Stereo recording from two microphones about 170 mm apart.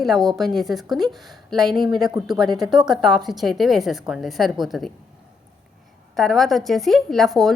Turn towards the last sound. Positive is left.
turn(degrees=0)  # may be behind; listen again after turning